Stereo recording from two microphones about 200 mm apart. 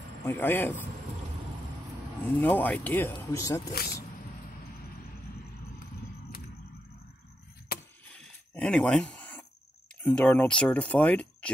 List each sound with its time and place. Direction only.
0.2 s speech: 10° left (ahead or behind)
2.2 s speech: 10° left (ahead or behind)
7.7 s chop: 50° left (ahead or behind)
8.1 s a sound: 5° left (ahead or behind)
10.0 s speech: 5° left (ahead or behind)